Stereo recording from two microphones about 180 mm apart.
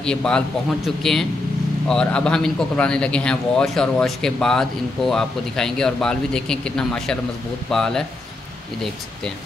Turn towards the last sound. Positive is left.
turn(degrees=5)  # may be behind; listen again after turning